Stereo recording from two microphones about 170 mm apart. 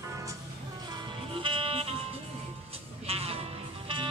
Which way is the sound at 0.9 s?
25° right (ahead or behind).